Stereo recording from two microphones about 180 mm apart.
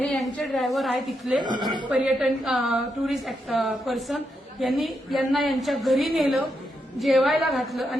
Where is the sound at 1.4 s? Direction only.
25° right (ahead or behind).